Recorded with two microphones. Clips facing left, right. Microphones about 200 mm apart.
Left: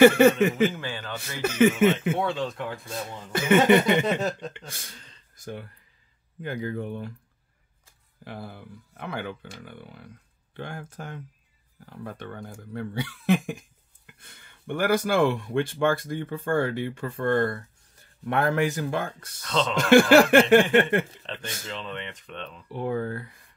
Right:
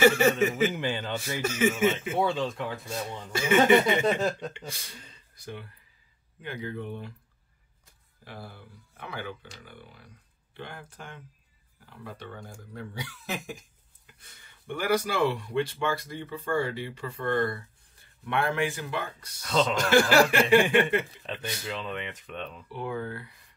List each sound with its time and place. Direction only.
0.0 s speech: 55° left (ahead or behind)
0.7 s a man's voice: 20° right (ahead or behind)
1.4 s speech: 60° left (ahead or behind)
2.1 s speech: centre (ahead or behind)
3.3 s speech: 55° left (ahead or behind)
4.2 s speech: centre (ahead or behind)
5.3 s speech: 45° left (ahead or behind)
8.2 s speech: 55° left (ahead or behind)
10.5 s speech: 45° left (ahead or behind)
19.4 s speech: 5° right (ahead or behind)
19.9 s speech: 55° left (ahead or behind)
21.6 s speech: 5° right (ahead or behind)
22.7 s speech: 45° left (ahead or behind)